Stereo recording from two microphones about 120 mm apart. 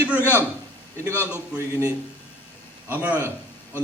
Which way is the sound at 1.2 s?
15° right (ahead or behind).